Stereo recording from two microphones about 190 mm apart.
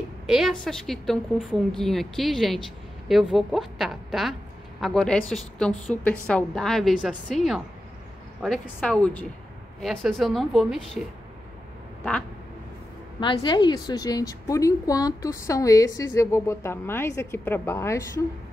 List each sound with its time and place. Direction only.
0.3 s a woman's voice: centre (ahead or behind)
13.2 s a woman's voice: 25° left (ahead or behind)